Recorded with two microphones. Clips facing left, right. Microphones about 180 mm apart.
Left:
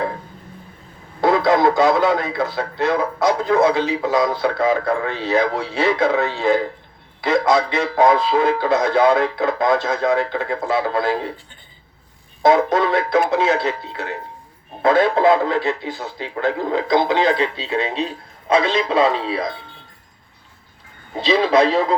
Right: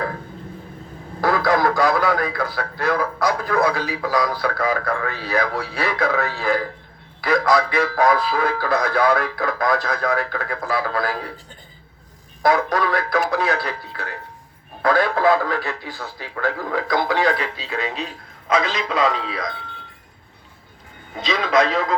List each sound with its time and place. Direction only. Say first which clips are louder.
1.2 s a man's voice: left 4 dB; 20° left (ahead or behind)
12.4 s a man's voice: left 4 dB; 20° left (ahead or behind)
21.2 s a man's voice: left 4 dB; 30° left (ahead or behind)